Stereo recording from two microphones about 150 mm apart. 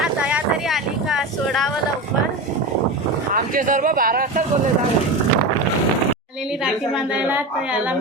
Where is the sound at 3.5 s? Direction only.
65° right (ahead or behind).